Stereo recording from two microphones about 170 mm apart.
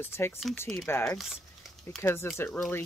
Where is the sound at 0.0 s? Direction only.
15° left (ahead or behind).